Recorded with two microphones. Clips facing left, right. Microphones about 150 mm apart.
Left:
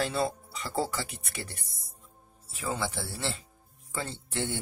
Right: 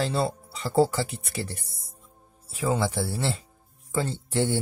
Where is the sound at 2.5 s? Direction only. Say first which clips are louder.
Right 7 dB; 40° right (ahead or behind).